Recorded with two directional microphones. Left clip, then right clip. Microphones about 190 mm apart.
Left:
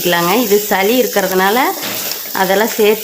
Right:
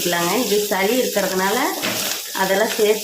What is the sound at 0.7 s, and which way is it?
Frying, 45° left (ahead or behind).